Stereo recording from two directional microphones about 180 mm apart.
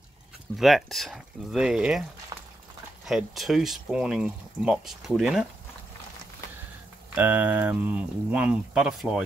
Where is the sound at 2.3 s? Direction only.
20° right (ahead or behind).